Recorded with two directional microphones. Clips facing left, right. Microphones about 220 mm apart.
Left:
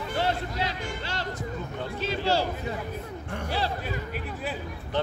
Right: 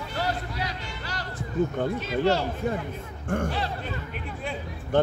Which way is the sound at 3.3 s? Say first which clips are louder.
Right 10 dB; 50° right (ahead or behind).